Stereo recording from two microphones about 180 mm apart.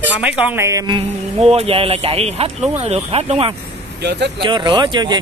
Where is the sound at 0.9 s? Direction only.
35° right (ahead or behind).